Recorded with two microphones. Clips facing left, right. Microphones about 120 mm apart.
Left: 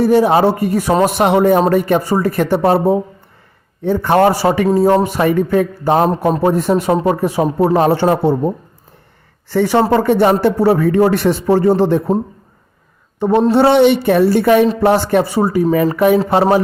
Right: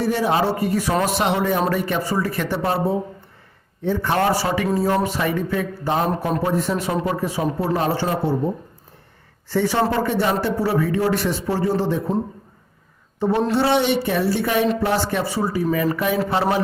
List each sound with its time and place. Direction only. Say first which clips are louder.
0.0 s speech: left 9 dB; 50° left (ahead or behind)
3.8 s a man's voice: left 7 dB; 50° left (ahead or behind); by 8.4 s 65° left (ahead or behind)
9.5 s a man's voice: left 7 dB; 60° left (ahead or behind)
13.1 s a woman's voice: left 7 dB; 55° left (ahead or behind)
15.6 s speech: left 8 dB; 35° left (ahead or behind)